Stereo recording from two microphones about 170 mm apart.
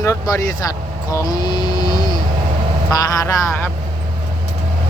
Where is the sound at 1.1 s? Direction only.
25° left (ahead or behind).